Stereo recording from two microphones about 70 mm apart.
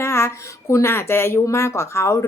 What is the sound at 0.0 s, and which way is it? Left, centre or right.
Speech, left.